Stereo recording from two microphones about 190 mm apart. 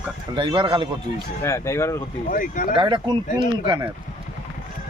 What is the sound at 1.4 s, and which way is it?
Speech, 15° left (ahead or behind).